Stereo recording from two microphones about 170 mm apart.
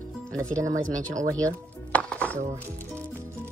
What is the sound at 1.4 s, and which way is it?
Music, 10° left (ahead or behind).